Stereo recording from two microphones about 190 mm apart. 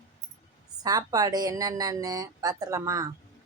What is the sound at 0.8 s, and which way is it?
Speech, 20° right (ahead or behind).